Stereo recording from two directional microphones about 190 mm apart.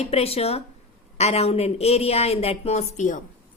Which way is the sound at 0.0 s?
30° left (ahead or behind).